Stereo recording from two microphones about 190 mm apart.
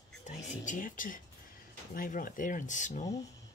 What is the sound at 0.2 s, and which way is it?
Speech, 40° left (ahead or behind).